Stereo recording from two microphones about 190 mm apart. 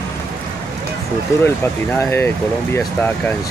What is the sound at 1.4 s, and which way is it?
Speech, 10° left (ahead or behind).